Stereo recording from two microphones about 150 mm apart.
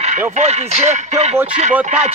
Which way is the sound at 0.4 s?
45° right (ahead or behind).